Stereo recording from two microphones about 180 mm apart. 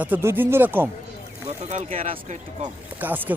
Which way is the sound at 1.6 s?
40° right (ahead or behind).